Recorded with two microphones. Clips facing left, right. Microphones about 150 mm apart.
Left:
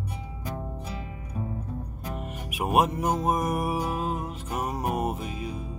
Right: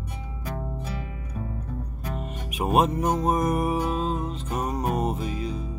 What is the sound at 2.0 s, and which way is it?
Music, 10° left (ahead or behind).